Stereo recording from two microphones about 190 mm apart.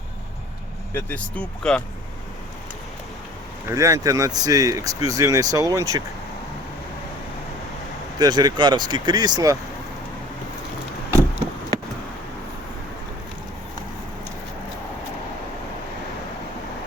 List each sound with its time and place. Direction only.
0.9 s speech: 10° left (ahead or behind)
3.7 s speech: 15° right (ahead or behind)
8.2 s speech: 20° right (ahead or behind)